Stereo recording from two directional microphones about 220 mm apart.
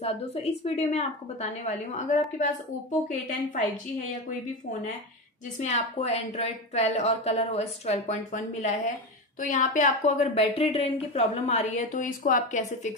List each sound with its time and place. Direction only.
0.0 s a woman's voice: 30° left (ahead or behind)
5.6 s a woman's voice: 30° left (ahead or behind)